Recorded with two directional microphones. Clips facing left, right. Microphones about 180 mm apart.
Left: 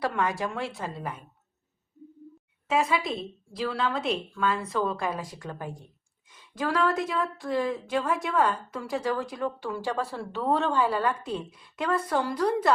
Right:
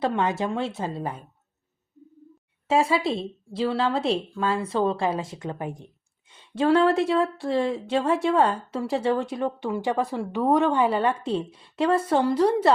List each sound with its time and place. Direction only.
0.0 s a woman's voice: 25° right (ahead or behind)
2.6 s a woman's voice: 30° right (ahead or behind)